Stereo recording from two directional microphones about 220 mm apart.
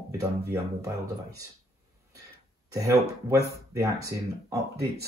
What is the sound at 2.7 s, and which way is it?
Speech, 15° right (ahead or behind).